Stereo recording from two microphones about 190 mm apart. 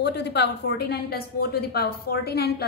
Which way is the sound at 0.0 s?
60° left (ahead or behind).